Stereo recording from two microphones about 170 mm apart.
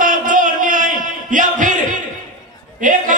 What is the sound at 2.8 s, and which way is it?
Chatter, 50° right (ahead or behind).